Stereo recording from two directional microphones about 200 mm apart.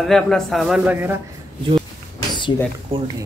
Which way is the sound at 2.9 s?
30° right (ahead or behind).